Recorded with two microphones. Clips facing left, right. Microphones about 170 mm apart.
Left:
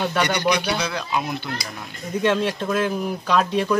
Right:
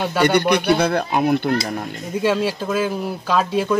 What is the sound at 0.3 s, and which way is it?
Speech, 55° right (ahead or behind).